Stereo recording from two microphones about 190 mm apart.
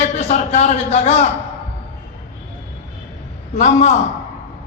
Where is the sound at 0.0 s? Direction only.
30° left (ahead or behind).